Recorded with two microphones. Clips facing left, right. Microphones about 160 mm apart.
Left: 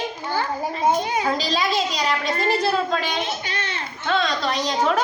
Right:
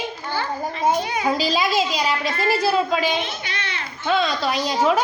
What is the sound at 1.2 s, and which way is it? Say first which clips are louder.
A woman's voice: right 2 dB; 10° right (ahead or behind).